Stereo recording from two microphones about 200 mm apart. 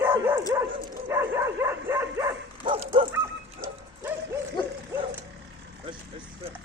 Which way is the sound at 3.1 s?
15° right (ahead or behind).